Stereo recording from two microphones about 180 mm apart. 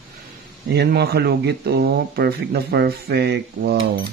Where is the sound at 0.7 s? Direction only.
65° right (ahead or behind).